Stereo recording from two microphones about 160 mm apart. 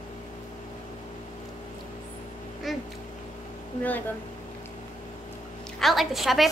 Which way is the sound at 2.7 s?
Centre (ahead or behind).